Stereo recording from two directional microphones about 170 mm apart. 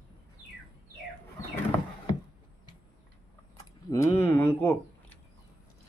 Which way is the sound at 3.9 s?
15° left (ahead or behind).